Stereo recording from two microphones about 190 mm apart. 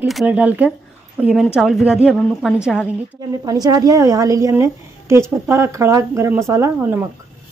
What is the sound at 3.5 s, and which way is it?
A woman's voice, 20° right (ahead or behind).